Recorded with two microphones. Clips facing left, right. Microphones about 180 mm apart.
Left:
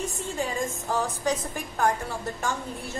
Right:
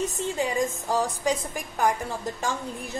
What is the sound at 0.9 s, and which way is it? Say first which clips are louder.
Speech: right 2 dB; 10° right (ahead or behind).